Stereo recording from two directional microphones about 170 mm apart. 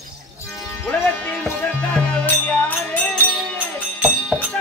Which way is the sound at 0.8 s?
5° left (ahead or behind).